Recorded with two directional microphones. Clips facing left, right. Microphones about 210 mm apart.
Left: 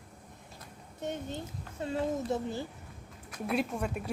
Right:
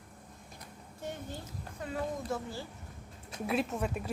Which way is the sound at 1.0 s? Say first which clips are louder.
Left 4 dB; 20° left (ahead or behind).